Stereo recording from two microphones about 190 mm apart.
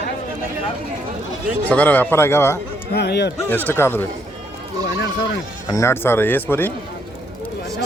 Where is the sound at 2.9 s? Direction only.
60° left (ahead or behind).